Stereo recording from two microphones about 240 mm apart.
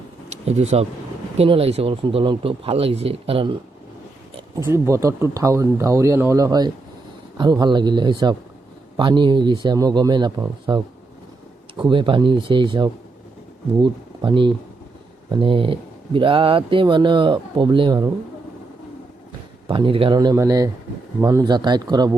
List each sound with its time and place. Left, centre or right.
0.3 s speech: right
4.6 s speech: centre
19.6 s speech: right